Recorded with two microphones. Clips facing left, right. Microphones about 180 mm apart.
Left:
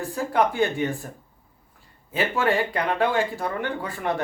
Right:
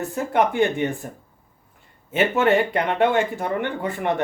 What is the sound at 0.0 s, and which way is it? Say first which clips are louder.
Speech: right 2 dB; 20° right (ahead or behind).